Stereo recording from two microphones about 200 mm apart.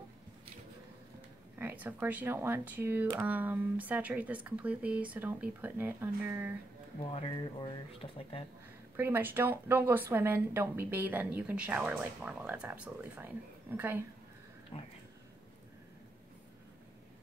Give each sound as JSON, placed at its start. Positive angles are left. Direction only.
{"t": 1.6, "sound": "speech", "side_deg": -10}
{"t": 7.1, "sound": "speech", "side_deg": 25}
{"t": 8.9, "sound": "speech", "side_deg": -10}
{"t": 14.7, "sound": "speech", "side_deg": 30}